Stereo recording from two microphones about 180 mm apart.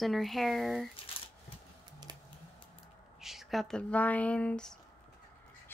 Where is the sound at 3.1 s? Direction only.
Centre (ahead or behind).